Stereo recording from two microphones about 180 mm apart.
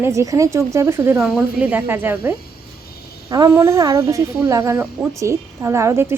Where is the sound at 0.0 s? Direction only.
15° right (ahead or behind).